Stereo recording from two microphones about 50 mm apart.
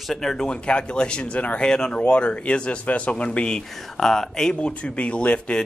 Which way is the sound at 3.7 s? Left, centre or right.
Centre.